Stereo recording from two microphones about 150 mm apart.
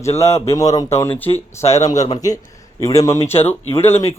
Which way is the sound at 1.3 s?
45° left (ahead or behind).